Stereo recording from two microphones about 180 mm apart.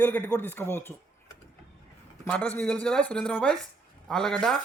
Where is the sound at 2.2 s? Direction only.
5° left (ahead or behind).